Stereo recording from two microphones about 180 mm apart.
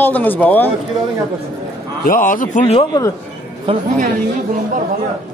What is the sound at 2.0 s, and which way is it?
Speech, 50° left (ahead or behind).